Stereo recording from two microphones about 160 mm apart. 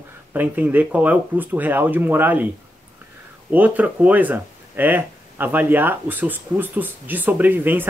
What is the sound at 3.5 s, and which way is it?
Speech, 10° right (ahead or behind).